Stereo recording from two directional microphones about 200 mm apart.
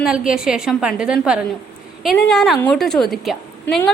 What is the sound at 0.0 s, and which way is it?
A woman's voice, 5° right (ahead or behind).